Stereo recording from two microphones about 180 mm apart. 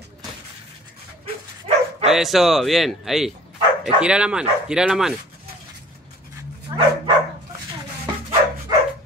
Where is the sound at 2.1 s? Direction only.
Centre (ahead or behind).